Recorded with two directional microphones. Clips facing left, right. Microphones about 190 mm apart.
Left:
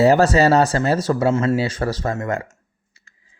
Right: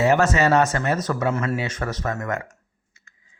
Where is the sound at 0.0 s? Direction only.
35° left (ahead or behind).